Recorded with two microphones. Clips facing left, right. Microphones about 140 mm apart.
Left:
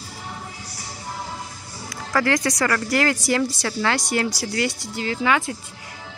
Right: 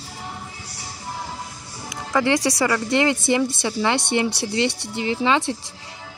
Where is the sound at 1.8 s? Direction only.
20° right (ahead or behind).